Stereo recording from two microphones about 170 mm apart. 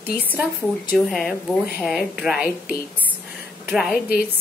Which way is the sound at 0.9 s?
Centre (ahead or behind).